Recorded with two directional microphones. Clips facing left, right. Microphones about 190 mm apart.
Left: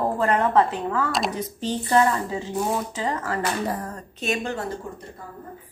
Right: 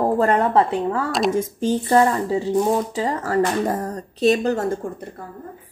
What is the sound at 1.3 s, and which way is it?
Speech, 45° right (ahead or behind).